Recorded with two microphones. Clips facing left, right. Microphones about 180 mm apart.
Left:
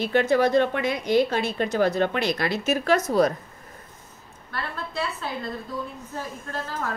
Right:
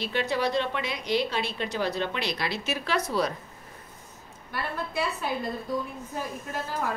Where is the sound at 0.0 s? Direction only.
50° left (ahead or behind).